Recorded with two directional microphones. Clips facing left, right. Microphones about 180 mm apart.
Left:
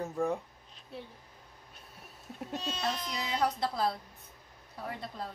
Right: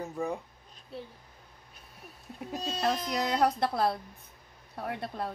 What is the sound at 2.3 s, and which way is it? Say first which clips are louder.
Speech: even; centre (ahead or behind).